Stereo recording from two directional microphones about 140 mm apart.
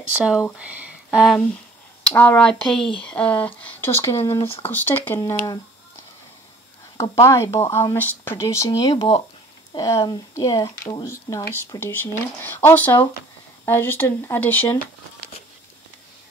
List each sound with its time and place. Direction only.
0.1 s speech: 5° right (ahead or behind)
2.0 s speech: 10° left (ahead or behind)
4.4 s speech: 45° left (ahead or behind)
4.6 s speech: 10° left (ahead or behind)
7.0 s speech: 20° left (ahead or behind)